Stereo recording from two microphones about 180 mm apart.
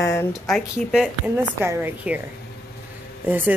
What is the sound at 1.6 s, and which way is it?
Speech, 15° right (ahead or behind).